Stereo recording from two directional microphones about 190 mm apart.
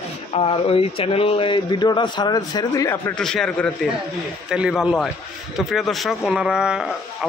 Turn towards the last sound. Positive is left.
turn(degrees=-5)  # may be behind; listen again after turning